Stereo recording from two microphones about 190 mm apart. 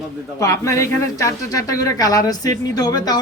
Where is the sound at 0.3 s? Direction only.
15° left (ahead or behind).